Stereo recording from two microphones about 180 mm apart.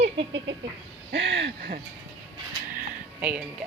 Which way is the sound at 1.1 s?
90° right.